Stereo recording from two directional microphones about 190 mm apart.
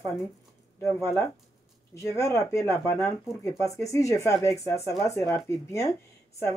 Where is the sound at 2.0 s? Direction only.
15° left (ahead or behind).